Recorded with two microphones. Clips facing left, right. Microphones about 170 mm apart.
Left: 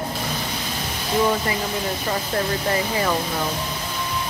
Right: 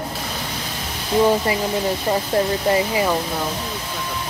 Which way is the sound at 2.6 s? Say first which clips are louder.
Right 4 dB; 15° right (ahead or behind).